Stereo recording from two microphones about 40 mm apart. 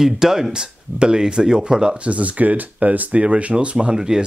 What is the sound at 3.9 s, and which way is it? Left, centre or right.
Speech, centre.